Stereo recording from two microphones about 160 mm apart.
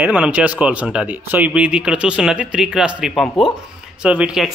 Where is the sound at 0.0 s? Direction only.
10° right (ahead or behind).